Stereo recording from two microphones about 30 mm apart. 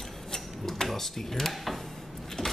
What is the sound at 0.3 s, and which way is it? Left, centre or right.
Tick-tock, centre.